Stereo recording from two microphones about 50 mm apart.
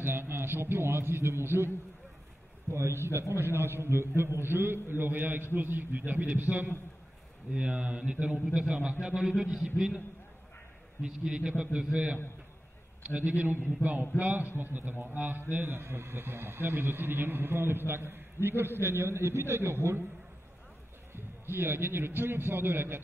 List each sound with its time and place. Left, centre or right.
0.0 s a man's voice: right
2.7 s a man's voice: right
7.5 s a man's voice: right
11.0 s a man's voice: centre
13.0 s a man's voice: right
21.1 s a man's voice: right